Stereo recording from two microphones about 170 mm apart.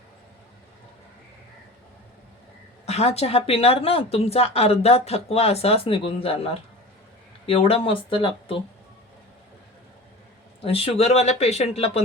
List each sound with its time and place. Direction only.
2.8 s speech: 35° left (ahead or behind)
10.6 s speech: 35° left (ahead or behind)